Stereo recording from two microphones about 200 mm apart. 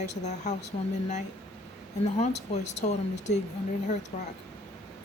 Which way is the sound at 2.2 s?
35° left (ahead or behind).